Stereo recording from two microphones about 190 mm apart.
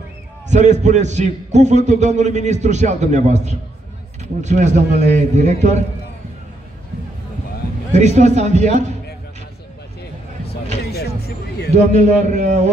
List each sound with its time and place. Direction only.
0.5 s a man's voice: 40° right (ahead or behind)
7.9 s a man's voice: 35° right (ahead or behind)
10.9 s vehicle: 55° left (ahead or behind)
11.7 s a man's voice: 35° right (ahead or behind)